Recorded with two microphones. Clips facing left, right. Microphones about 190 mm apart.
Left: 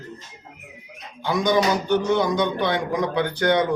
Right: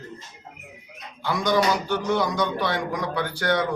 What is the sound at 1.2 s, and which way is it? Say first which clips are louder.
A man's voice: left 2 dB; 20° left (ahead or behind).